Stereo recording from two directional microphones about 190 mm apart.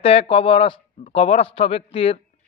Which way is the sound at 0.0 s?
30° left (ahead or behind).